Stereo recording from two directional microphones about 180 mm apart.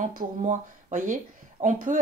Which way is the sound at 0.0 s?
45° right (ahead or behind).